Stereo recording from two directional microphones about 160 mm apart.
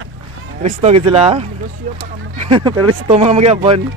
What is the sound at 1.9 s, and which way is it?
Speech, 55° right (ahead or behind).